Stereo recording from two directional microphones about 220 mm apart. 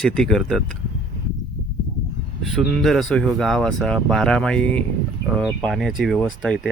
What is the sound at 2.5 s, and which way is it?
Speech, centre (ahead or behind).